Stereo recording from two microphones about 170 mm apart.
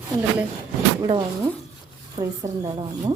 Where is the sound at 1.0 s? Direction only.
30° right (ahead or behind).